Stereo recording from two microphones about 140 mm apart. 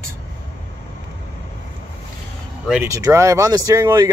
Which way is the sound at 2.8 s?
25° right (ahead or behind).